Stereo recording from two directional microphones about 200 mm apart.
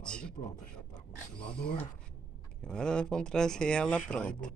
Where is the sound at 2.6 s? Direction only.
5° left (ahead or behind).